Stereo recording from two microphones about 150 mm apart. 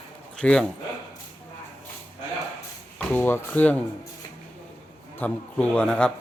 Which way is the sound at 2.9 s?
15° left (ahead or behind).